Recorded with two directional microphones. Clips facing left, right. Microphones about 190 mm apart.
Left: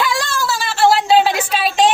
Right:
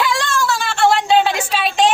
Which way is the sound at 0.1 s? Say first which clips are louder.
Right 1 dB; centre (ahead or behind).